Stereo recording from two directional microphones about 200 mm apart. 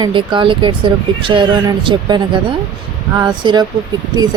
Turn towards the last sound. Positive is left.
turn(degrees=-20)  # may be behind; listen again after turning